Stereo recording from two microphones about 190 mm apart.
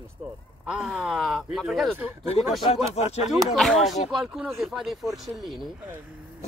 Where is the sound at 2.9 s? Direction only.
35° left (ahead or behind).